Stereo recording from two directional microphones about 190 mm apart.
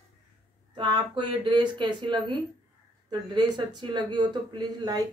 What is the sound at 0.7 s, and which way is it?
Speech, 25° right (ahead or behind).